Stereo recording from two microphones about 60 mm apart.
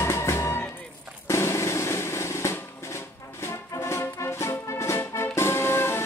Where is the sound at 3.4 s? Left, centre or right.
Left.